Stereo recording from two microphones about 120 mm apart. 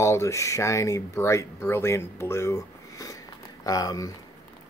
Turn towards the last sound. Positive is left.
turn(degrees=30)  # may be behind; listen again after turning